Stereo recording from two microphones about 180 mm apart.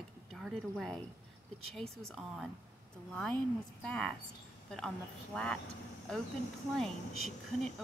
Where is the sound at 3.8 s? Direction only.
5° left (ahead or behind).